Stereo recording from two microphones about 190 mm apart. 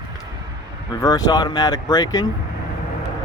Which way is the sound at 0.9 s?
20° left (ahead or behind).